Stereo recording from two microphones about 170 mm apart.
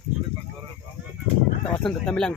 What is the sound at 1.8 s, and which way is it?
Speech, 5° left (ahead or behind).